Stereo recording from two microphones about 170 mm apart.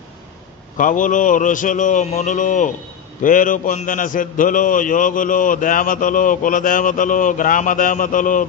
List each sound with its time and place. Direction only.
0.8 s a man's voice: 50° left (ahead or behind)